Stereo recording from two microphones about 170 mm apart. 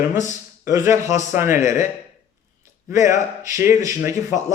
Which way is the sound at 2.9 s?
15° right (ahead or behind).